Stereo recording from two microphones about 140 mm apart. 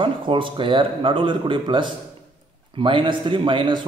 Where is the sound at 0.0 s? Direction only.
40° right (ahead or behind).